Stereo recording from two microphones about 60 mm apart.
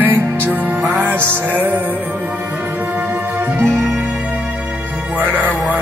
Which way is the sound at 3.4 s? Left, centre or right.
Right.